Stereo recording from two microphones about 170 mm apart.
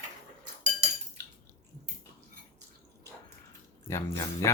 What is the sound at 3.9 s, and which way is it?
Speech, 15° left (ahead or behind).